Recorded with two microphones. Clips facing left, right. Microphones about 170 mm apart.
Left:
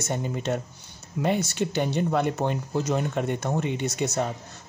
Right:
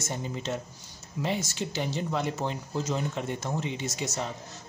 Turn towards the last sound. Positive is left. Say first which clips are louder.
# left 6 dB
turn(degrees=60)  # may be behind; listen again after turning